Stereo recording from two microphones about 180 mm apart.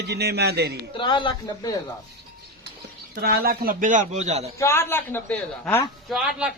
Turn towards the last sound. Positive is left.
turn(degrees=-5)  # may be behind; listen again after turning